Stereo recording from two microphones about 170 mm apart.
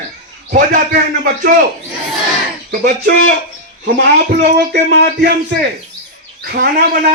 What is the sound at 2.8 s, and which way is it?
Speech, 70° right (ahead or behind).